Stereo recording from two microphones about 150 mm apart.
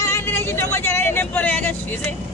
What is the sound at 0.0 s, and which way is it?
Vehicle, 15° left (ahead or behind).